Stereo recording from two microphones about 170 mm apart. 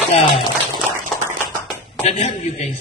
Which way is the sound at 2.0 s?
45° left (ahead or behind).